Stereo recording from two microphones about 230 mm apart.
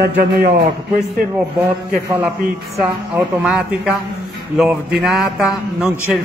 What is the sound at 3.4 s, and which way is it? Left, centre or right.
A man's voice, centre.